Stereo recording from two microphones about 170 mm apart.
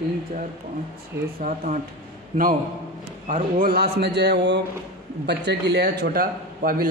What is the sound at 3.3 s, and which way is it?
A man's voice, 60° right (ahead or behind).